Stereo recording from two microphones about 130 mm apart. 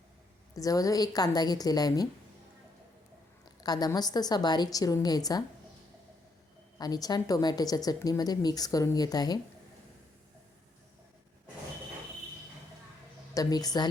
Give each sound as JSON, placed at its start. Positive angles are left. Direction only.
{"t": 0.5, "sound": "speech", "side_deg": 25}
{"t": 3.6, "sound": "a woman's voice", "side_deg": 30}
{"t": 6.7, "sound": "speech", "side_deg": 30}
{"t": 13.3, "sound": "speech", "side_deg": 30}